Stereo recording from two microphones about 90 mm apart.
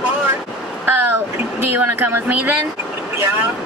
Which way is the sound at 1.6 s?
25° right (ahead or behind).